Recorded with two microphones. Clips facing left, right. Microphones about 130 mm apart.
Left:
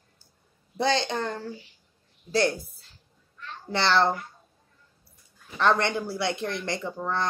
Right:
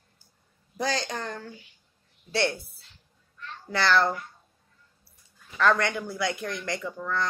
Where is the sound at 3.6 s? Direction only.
25° left (ahead or behind).